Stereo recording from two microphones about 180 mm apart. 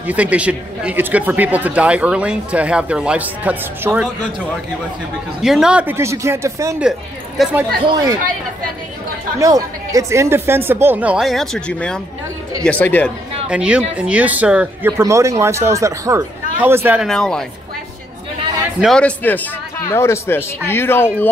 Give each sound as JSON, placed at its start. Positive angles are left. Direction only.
{"t": 0.0, "sound": "a man's voice", "side_deg": -10}
{"t": 5.4, "sound": "a man's voice", "side_deg": -5}
{"t": 6.8, "sound": "a woman's voice", "side_deg": -5}
{"t": 7.8, "sound": "speech", "side_deg": -20}
{"t": 9.4, "sound": "a man's voice", "side_deg": -20}
{"t": 13.5, "sound": "a man's voice", "side_deg": -5}
{"t": 17.1, "sound": "a woman's voice", "side_deg": 0}
{"t": 18.8, "sound": "speech", "side_deg": 5}